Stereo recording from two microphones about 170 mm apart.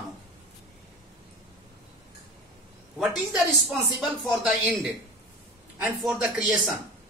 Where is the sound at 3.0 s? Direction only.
Centre (ahead or behind).